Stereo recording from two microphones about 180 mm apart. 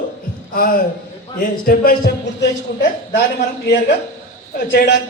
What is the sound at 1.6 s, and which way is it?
Speech, 55° left (ahead or behind).